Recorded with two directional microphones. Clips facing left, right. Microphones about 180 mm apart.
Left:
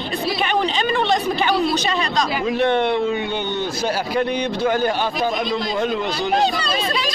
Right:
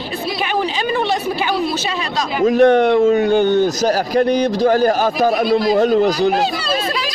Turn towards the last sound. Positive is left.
turn(degrees=-40)  # may be behind; listen again after turning